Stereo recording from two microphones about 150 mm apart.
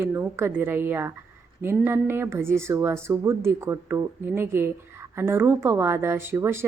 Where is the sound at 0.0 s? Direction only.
15° right (ahead or behind).